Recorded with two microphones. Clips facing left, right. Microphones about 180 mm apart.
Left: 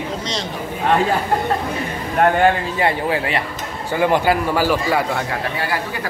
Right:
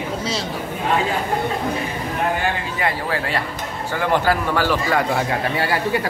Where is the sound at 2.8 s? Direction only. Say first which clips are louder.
Left 4 dB; 25° left (ahead or behind).